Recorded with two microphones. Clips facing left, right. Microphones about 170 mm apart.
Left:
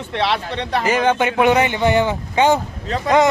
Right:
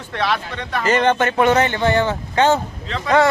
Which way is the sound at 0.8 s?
10° left (ahead or behind).